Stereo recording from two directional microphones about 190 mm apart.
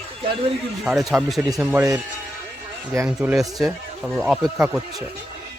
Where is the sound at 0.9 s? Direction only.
Centre (ahead or behind).